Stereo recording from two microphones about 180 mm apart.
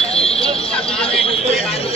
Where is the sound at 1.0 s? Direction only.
35° left (ahead or behind).